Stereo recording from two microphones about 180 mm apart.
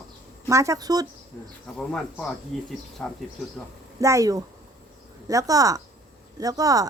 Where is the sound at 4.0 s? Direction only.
15° right (ahead or behind).